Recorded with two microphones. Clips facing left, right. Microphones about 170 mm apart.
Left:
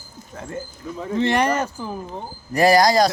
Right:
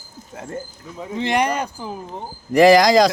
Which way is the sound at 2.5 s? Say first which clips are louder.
Right 4 dB; 90° right.